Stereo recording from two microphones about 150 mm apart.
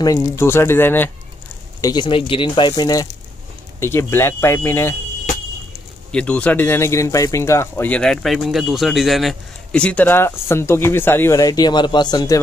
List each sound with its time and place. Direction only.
0.0 s speech: 20° left (ahead or behind)
1.8 s speech: 25° left (ahead or behind)
6.1 s speech: 10° left (ahead or behind); by 12.4 s 25° left (ahead or behind)